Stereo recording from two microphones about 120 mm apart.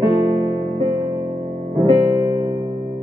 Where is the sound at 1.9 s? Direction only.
40° right (ahead or behind).